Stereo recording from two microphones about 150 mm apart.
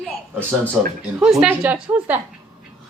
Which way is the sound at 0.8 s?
5° right (ahead or behind).